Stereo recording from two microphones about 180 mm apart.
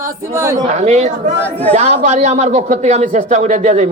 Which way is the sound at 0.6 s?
40° right (ahead or behind).